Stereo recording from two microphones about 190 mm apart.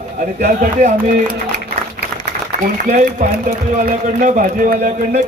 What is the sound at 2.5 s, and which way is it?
Speech, 45° right (ahead or behind).